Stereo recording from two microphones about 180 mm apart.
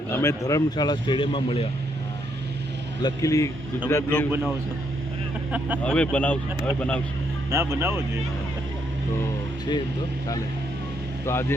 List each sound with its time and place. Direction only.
0.1 s speech: 15° left (ahead or behind); by 1.6 s 30° left (ahead or behind)
3.0 s a man's voice: 20° left (ahead or behind)
5.5 s speech: 10° right (ahead or behind)
5.8 s a man's voice: 5° left (ahead or behind)
7.5 s speech: 15° right (ahead or behind)
11.3 s a man's voice: 15° left (ahead or behind)